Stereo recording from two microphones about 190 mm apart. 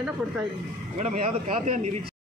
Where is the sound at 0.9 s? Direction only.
40° right (ahead or behind).